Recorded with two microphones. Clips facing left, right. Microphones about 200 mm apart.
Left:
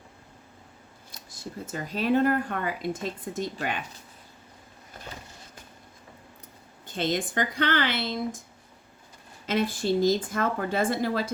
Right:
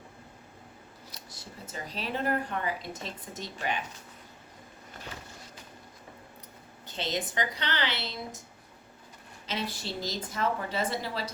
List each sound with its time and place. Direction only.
1.1 s speech: 50° left (ahead or behind)
6.8 s speech: 50° left (ahead or behind)
9.5 s speech: 50° left (ahead or behind)